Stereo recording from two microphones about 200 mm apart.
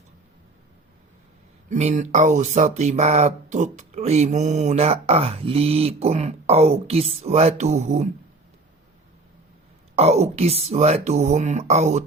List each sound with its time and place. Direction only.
1.7 s speech: 35° right (ahead or behind)
9.9 s speech: 30° right (ahead or behind)